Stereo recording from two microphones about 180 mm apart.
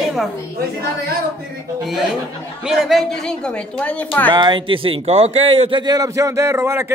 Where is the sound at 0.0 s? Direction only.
Centre (ahead or behind).